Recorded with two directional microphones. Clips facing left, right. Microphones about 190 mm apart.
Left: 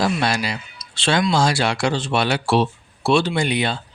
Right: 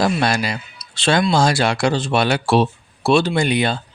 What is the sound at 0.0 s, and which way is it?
Speech, 45° right (ahead or behind).